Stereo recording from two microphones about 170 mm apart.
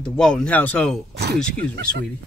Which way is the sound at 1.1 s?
75° right (ahead or behind).